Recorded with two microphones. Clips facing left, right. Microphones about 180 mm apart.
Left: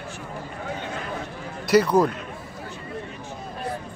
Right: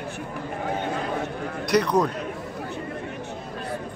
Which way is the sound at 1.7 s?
5° left (ahead or behind).